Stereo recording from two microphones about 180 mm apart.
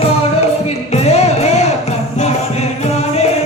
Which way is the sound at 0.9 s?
35° left (ahead or behind).